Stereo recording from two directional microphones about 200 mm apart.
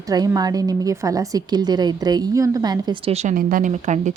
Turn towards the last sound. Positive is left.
turn(degrees=-35)  # may be behind; listen again after turning